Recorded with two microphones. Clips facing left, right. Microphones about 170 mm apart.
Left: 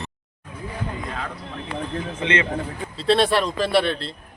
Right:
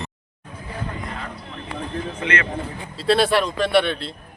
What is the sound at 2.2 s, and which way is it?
Speech, 25° left (ahead or behind).